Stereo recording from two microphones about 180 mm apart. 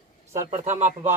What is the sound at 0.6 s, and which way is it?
Speech, 40° right (ahead or behind).